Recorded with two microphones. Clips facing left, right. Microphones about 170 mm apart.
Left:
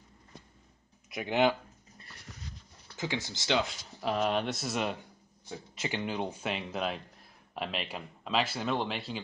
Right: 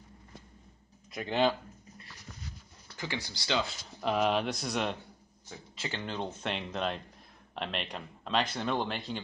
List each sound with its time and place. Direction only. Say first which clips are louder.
1.1 s speech: left 1 dB; 15° left (ahead or behind)
3.0 s speech: left 3 dB; 20° left (ahead or behind)
4.0 s a man's voice: right 1 dB; centre (ahead or behind)
5.5 s a man's voice: left 3 dB; 15° left (ahead or behind)